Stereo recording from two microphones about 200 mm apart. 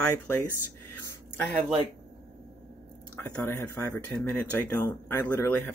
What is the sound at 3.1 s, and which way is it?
Speech, 10° left (ahead or behind).